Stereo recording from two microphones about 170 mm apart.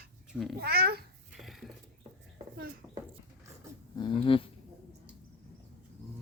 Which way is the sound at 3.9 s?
30° left (ahead or behind).